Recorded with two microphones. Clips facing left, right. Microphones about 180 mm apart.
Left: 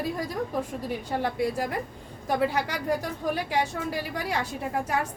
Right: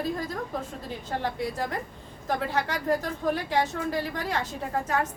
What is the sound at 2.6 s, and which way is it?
Speech, 10° left (ahead or behind).